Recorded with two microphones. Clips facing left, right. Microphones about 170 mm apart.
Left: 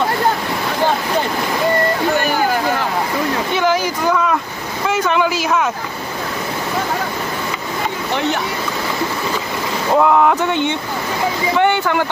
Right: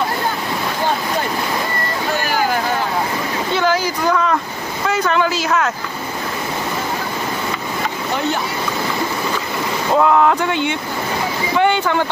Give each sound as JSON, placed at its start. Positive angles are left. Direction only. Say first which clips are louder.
{"t": 3.5, "sound": "a sound", "louder": "right 1 dB", "side_deg": 15}
{"t": 4.9, "sound": "speech", "louder": "left 1 dB", "side_deg": 15}
{"t": 9.9, "sound": "speech", "louder": "left 1 dB", "side_deg": 15}
{"t": 11.5, "sound": "speech", "louder": "even", "side_deg": -15}